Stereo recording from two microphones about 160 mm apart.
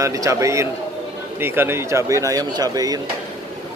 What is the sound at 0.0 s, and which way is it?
Speech, 20° right (ahead or behind).